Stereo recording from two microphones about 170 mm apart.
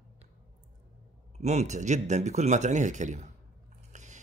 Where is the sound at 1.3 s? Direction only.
40° right (ahead or behind).